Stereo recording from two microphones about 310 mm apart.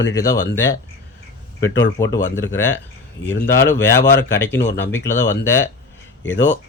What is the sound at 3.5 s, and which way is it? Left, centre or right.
Speech, centre.